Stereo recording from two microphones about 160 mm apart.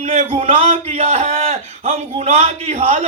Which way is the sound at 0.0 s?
40° right (ahead or behind).